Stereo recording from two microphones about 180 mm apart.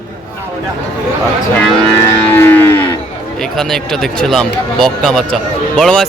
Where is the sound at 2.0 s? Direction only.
15° left (ahead or behind).